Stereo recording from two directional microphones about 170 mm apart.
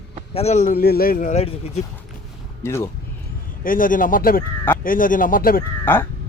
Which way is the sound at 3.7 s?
55° left (ahead or behind).